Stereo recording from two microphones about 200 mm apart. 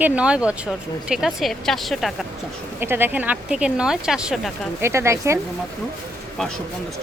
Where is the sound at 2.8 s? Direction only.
10° right (ahead or behind).